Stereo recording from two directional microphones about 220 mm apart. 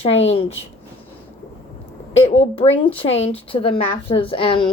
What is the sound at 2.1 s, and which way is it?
Speech, 25° left (ahead or behind).